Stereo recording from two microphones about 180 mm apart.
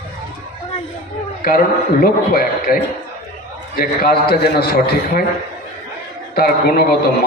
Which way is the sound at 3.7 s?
60° left (ahead or behind).